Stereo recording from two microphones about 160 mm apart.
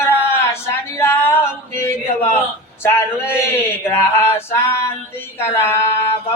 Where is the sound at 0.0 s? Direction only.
15° left (ahead or behind).